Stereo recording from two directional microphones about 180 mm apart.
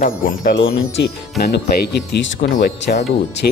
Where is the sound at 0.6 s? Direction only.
70° left (ahead or behind).